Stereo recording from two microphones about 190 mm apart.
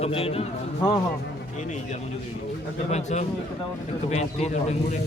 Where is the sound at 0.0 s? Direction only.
30° left (ahead or behind).